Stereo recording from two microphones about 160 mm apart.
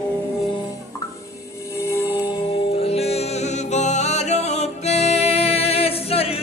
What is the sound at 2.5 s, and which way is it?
Music, 40° left (ahead or behind).